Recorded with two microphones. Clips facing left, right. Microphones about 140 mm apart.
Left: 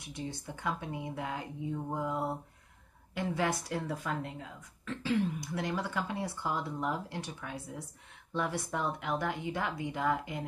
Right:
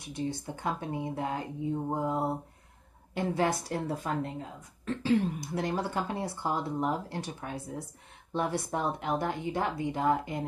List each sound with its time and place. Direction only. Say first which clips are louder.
0.7 s speech: right 3 dB; 35° right (ahead or behind)